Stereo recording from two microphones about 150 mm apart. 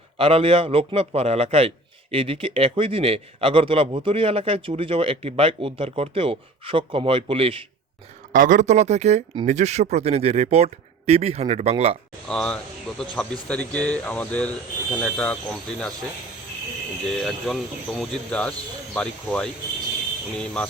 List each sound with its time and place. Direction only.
0.2 s a man's voice: 40° right (ahead or behind)
8.3 s speech: 60° right (ahead or behind); by 11.9 s 45° right (ahead or behind)
12.3 s speech: 5° left (ahead or behind)
17.2 s speech: centre (ahead or behind)